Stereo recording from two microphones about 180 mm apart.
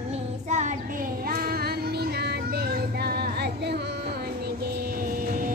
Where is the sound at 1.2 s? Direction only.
55° right (ahead or behind).